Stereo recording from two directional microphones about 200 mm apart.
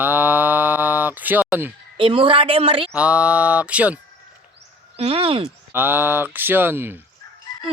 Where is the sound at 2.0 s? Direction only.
25° right (ahead or behind).